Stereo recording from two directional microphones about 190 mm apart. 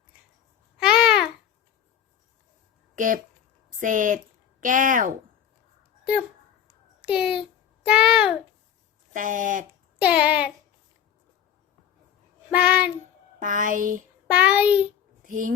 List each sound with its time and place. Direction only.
0.8 s babbling: 5° right (ahead or behind)
2.9 s speech: 45° right (ahead or behind)
7.0 s a child's voice: 5° right (ahead or behind)
9.1 s speech: 45° right (ahead or behind)
10.0 s a child's voice: 5° right (ahead or behind)
12.5 s child singing: 5° right (ahead or behind)
13.4 s speech: 45° right (ahead or behind)
14.3 s a child's voice: 5° right (ahead or behind)
15.2 s speech: 45° right (ahead or behind)